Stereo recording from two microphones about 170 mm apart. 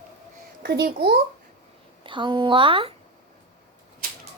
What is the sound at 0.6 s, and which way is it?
Speech, 75° right (ahead or behind).